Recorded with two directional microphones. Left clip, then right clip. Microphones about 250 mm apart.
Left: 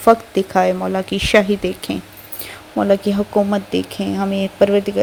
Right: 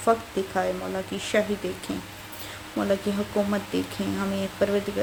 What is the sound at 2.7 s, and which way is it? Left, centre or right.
Speech, left.